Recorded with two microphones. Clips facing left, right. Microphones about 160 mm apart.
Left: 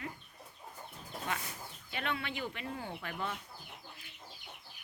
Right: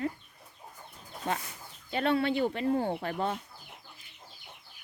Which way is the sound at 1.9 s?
35° right (ahead or behind).